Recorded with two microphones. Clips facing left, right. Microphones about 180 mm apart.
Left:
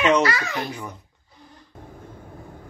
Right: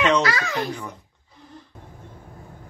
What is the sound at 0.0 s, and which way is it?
Babbling, 10° left (ahead or behind).